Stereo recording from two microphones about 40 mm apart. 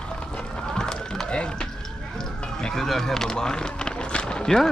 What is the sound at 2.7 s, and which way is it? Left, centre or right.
Speech, centre.